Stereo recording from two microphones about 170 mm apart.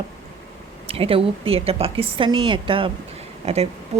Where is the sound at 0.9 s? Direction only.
35° right (ahead or behind).